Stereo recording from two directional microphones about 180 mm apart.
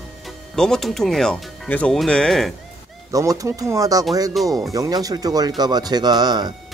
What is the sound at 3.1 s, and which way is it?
Speech, 20° right (ahead or behind).